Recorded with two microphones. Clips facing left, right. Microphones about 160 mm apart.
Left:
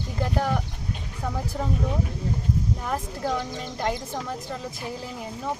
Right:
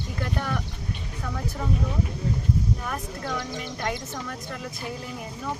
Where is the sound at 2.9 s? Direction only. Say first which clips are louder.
Left 4 dB; 30° left (ahead or behind).